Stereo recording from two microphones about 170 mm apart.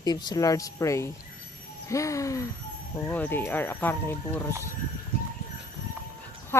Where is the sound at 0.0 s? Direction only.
25° left (ahead or behind).